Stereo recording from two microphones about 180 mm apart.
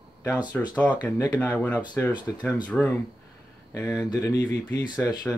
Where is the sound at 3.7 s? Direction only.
20° left (ahead or behind).